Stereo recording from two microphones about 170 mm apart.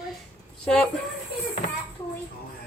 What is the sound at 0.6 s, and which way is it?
Speech, 5° left (ahead or behind).